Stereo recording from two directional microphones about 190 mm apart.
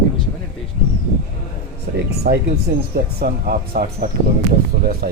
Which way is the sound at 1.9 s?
55° right (ahead or behind).